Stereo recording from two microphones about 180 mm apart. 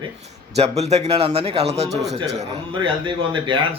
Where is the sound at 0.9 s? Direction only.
35° right (ahead or behind).